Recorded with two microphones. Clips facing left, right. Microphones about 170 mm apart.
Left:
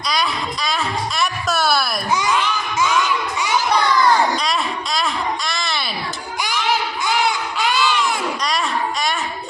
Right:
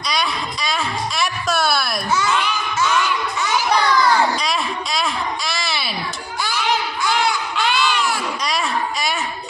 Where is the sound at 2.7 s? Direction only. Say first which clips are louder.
Left 1 dB; 10° left (ahead or behind).